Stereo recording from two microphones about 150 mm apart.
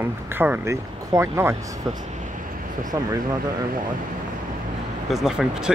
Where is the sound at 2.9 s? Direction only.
25° right (ahead or behind).